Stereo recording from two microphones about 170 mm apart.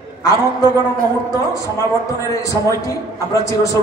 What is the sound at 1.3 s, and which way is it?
A man's voice, 20° left (ahead or behind).